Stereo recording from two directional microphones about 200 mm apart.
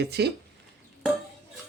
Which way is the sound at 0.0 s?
55° right (ahead or behind).